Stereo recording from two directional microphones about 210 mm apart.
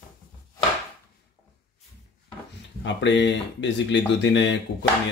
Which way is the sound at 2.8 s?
60° left (ahead or behind).